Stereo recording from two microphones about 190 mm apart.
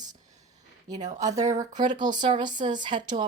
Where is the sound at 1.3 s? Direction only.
35° right (ahead or behind).